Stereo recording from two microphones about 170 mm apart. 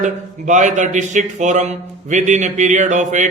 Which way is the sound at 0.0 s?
45° right (ahead or behind).